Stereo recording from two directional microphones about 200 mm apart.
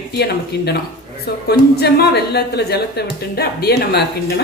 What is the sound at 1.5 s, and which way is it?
A woman's voice, 55° left (ahead or behind).